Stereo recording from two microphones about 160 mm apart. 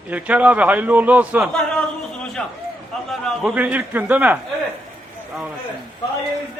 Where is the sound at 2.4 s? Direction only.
5° left (ahead or behind).